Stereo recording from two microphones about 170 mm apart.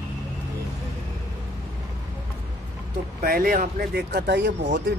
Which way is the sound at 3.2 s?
60° right (ahead or behind).